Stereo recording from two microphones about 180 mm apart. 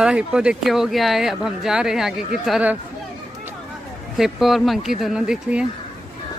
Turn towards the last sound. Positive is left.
turn(degrees=-5)  # may be behind; listen again after turning